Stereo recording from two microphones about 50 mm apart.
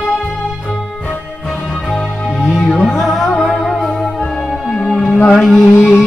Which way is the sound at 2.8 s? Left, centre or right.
Centre.